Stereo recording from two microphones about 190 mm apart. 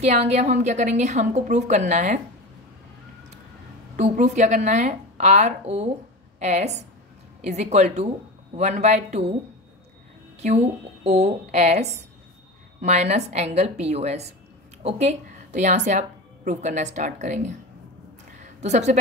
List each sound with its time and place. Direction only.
0.0 s a woman's voice: 35° right (ahead or behind)
3.9 s a woman's voice: 40° right (ahead or behind)
10.4 s a woman's voice: 35° right (ahead or behind)
18.6 s a woman's voice: 40° right (ahead or behind)